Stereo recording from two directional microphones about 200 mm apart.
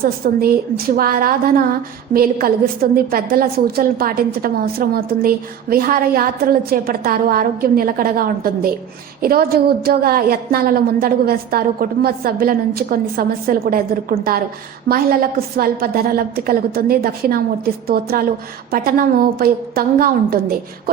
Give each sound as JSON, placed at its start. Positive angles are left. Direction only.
{"t": 0.0, "sound": "a woman's voice", "side_deg": -50}